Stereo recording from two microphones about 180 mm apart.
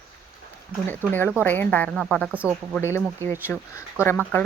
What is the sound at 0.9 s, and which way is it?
A woman's voice, 10° left (ahead or behind).